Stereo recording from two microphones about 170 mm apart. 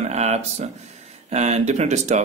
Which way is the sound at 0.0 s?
40° right (ahead or behind).